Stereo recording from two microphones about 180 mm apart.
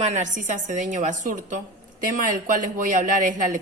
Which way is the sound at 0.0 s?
40° right (ahead or behind).